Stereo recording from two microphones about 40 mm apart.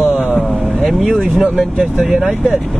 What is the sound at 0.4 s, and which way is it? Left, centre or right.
Vehicle, centre.